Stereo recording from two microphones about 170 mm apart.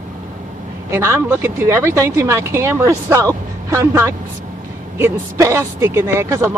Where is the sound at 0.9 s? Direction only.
15° right (ahead or behind).